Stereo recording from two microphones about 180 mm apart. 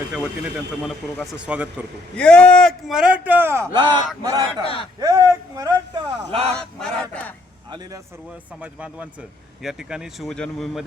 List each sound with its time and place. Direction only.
1.1 s speech: centre (ahead or behind)
2.1 s speech: 5° left (ahead or behind); by 4.6 s 20° right (ahead or behind)
4.6 s speech: 30° left (ahead or behind)
4.9 s speech: 20° right (ahead or behind)
6.5 s honk: 5° left (ahead or behind)
8.6 s speech: 5° right (ahead or behind)